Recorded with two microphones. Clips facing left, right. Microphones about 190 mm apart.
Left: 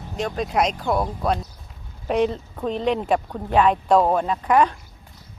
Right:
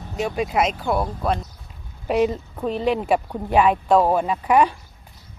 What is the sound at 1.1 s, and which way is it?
Speech, 5° left (ahead or behind).